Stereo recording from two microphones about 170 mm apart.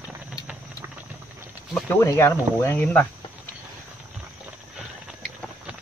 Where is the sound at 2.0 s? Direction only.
15° left (ahead or behind).